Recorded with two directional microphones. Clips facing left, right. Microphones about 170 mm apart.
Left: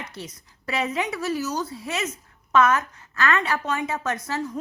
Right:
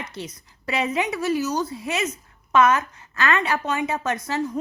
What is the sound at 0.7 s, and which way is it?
Speech, 15° right (ahead or behind).